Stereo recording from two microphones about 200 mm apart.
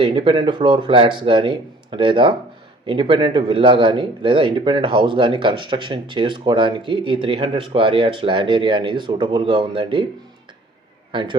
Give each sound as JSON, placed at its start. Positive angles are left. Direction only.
{"t": 0.0, "sound": "speech", "side_deg": -25}
{"t": 11.1, "sound": "a man's voice", "side_deg": -25}